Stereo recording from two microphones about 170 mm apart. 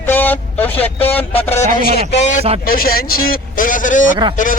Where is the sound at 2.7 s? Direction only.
60° left (ahead or behind).